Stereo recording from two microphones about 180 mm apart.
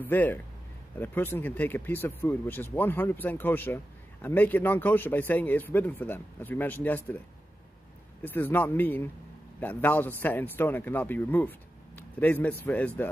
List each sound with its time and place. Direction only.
0.0 s speech: 10° left (ahead or behind)
8.2 s speech: 10° left (ahead or behind)